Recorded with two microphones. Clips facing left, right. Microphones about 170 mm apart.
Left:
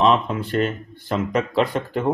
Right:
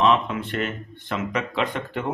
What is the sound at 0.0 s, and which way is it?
Speech, 30° left (ahead or behind).